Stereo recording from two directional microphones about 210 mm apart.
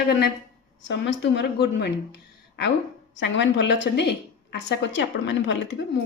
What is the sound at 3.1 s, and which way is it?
A woman's voice, 60° left (ahead or behind).